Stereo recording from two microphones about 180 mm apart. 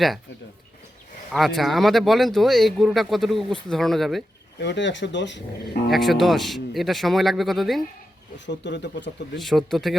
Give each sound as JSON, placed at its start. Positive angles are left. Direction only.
{"t": 1.3, "sound": "speech", "side_deg": 0}
{"t": 4.6, "sound": "speech", "side_deg": 80}
{"t": 5.9, "sound": "speech", "side_deg": 0}
{"t": 8.4, "sound": "speech", "side_deg": 75}
{"t": 9.4, "sound": "speech", "side_deg": 0}